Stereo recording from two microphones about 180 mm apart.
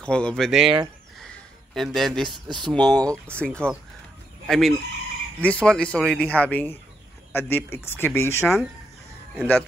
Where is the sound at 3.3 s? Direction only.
5° left (ahead or behind).